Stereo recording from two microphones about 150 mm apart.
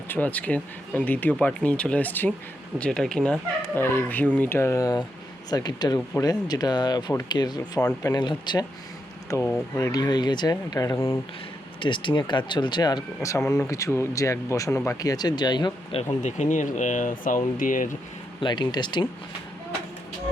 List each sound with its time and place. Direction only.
0.1 s speech: 10° left (ahead or behind); by 8.6 s 30° left (ahead or behind)
9.4 s speech: 15° left (ahead or behind)
11.8 s speech: 35° left (ahead or behind)
16.0 s speech: 50° left (ahead or behind)
18.3 s speech: 30° left (ahead or behind)